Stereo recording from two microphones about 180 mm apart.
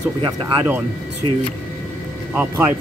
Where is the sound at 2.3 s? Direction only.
10° right (ahead or behind).